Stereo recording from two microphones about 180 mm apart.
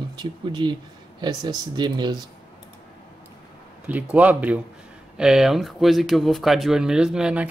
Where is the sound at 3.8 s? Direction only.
10° right (ahead or behind).